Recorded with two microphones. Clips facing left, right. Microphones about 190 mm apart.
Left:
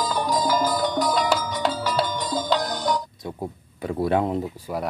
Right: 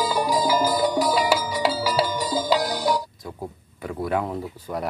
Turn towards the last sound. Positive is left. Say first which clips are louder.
# left 3 dB
turn(degrees=20)  # may be behind; listen again after turning